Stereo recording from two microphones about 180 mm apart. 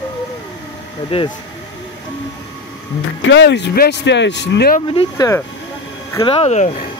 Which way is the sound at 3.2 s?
75° left (ahead or behind).